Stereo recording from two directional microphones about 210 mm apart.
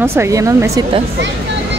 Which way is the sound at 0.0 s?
10° right (ahead or behind).